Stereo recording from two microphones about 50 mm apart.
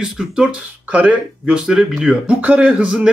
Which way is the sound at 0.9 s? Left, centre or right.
Right.